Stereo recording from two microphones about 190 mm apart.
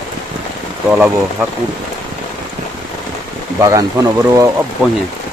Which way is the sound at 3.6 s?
15° right (ahead or behind).